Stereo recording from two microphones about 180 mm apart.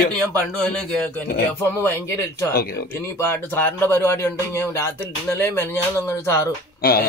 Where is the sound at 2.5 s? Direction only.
55° left (ahead or behind).